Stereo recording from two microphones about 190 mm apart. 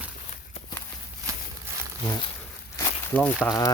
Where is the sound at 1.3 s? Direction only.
15° right (ahead or behind).